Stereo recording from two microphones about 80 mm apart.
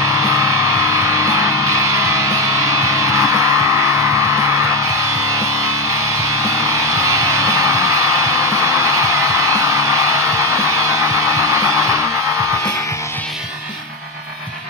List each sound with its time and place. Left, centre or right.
0.4 s music: right
6.4 s music: right